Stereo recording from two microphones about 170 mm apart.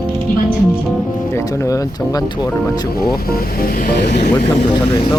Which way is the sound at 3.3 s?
65° left (ahead or behind).